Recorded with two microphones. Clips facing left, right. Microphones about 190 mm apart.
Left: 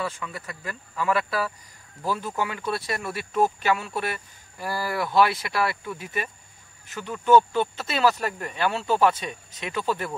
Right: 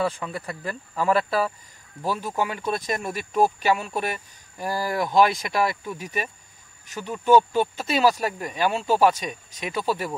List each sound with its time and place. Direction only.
0.0 s speech: 35° right (ahead or behind)
2.0 s speech: 15° right (ahead or behind)